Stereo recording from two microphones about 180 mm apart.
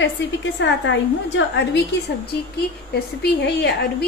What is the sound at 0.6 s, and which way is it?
Speech, 90° left.